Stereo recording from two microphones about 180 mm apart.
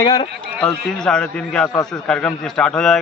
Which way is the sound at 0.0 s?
25° left (ahead or behind).